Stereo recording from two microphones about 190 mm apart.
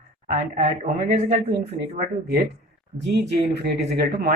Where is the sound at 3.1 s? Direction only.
60° right (ahead or behind).